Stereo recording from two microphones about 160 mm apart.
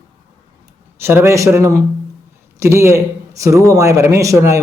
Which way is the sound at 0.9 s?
15° right (ahead or behind).